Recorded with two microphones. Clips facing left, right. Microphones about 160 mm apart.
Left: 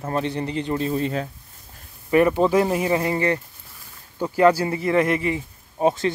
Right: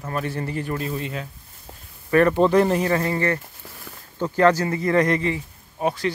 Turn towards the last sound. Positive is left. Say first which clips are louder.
# left 3 dB
turn(degrees=25)  # may be behind; listen again after turning